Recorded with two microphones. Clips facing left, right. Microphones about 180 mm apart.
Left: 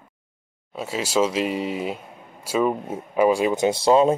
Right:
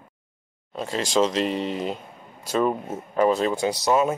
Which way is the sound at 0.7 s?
5° left (ahead or behind).